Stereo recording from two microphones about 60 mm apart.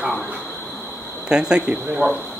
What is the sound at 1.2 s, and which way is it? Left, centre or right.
Speech, centre.